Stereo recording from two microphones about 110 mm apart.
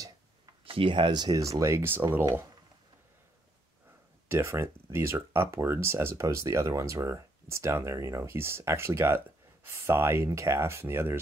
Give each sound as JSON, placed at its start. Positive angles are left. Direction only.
{"t": 0.7, "sound": "speech", "side_deg": -55}
{"t": 4.3, "sound": "speech", "side_deg": -25}